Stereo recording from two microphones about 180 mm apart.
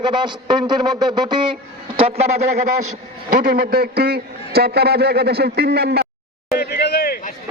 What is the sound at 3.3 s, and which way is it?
A man's voice, 50° right (ahead or behind).